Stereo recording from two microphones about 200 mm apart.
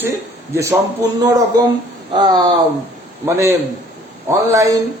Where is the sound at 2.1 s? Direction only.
20° right (ahead or behind).